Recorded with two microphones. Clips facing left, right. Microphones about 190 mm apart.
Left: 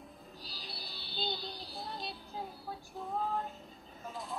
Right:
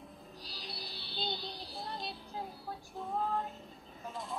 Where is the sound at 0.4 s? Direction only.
Centre (ahead or behind).